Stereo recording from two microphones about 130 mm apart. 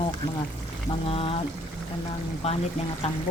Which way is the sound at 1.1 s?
50° left (ahead or behind).